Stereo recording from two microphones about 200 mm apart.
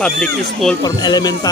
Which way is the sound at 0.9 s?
20° left (ahead or behind).